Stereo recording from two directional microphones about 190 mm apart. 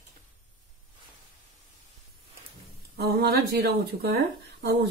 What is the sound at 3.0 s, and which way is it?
Speech, 55° right (ahead or behind).